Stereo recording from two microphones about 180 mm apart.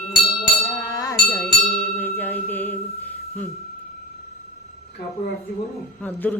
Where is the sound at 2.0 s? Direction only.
10° left (ahead or behind).